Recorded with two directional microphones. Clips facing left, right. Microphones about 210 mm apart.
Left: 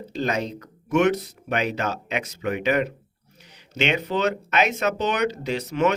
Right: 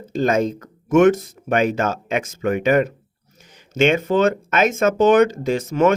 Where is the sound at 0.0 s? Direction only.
50° right (ahead or behind).